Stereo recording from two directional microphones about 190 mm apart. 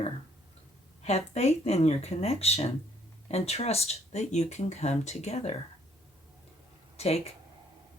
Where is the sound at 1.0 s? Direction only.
35° left (ahead or behind).